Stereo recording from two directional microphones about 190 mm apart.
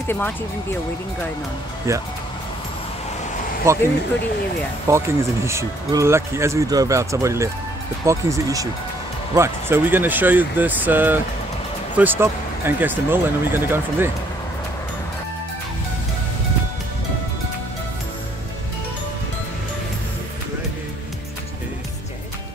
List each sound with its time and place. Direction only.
0.1 s speech: 10° left (ahead or behind)
1.9 s speech: 15° right (ahead or behind)
3.7 s speech: 15° right (ahead or behind)
4.8 s speech: 15° right (ahead or behind)